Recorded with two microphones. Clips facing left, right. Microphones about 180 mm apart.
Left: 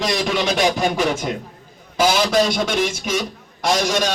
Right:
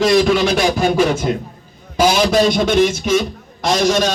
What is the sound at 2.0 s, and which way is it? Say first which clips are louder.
Speech: right 3 dB; 25° right (ahead or behind).